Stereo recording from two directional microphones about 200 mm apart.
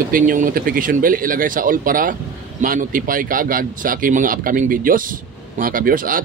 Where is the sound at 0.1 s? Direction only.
45° right (ahead or behind).